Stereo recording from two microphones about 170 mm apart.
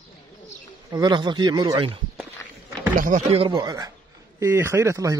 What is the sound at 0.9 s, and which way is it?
A man's voice, 25° right (ahead or behind).